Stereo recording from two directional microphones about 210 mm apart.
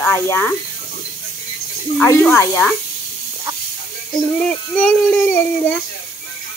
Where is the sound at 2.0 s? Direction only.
5° left (ahead or behind).